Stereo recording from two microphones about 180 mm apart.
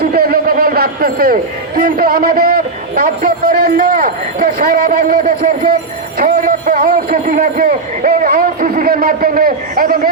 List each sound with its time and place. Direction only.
0.0 s a man's voice: 55° right (ahead or behind)